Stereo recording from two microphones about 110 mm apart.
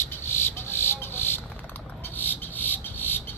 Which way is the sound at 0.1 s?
20° left (ahead or behind).